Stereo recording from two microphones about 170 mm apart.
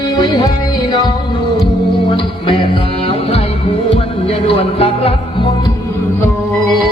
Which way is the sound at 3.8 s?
35° left (ahead or behind).